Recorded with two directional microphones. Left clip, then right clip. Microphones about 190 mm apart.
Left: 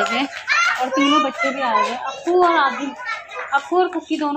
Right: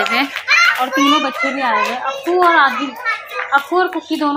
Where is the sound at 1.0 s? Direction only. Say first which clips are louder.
Right 2 dB; 20° right (ahead or behind).